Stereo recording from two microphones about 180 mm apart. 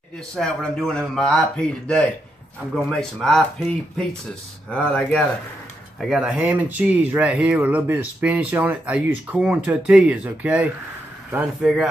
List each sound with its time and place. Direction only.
0.4 s speech: 5° left (ahead or behind)